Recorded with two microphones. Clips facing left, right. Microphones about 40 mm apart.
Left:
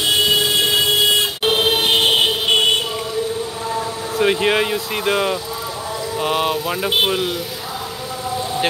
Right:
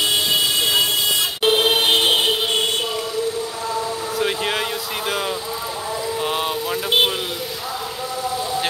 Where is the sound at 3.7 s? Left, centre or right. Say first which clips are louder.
Even; centre.